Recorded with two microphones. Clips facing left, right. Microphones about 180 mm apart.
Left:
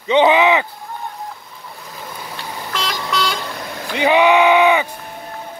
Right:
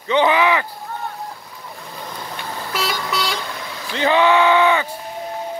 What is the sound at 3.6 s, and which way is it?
Vehicle, 50° left (ahead or behind).